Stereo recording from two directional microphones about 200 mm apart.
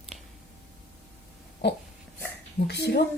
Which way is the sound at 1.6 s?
55° left (ahead or behind).